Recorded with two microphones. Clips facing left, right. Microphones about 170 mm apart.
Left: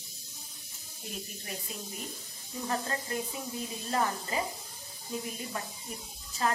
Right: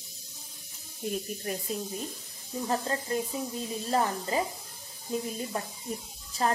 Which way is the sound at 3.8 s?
30° right (ahead or behind).